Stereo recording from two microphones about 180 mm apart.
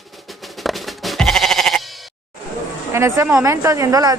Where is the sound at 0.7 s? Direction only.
Centre (ahead or behind).